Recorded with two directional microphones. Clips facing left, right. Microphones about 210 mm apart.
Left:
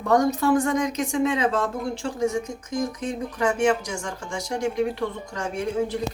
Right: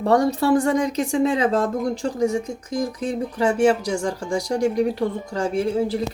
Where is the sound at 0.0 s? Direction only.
30° right (ahead or behind).